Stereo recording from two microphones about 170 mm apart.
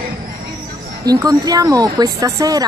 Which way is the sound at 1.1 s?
20° right (ahead or behind).